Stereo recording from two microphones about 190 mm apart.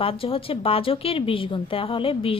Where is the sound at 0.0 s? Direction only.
30° left (ahead or behind).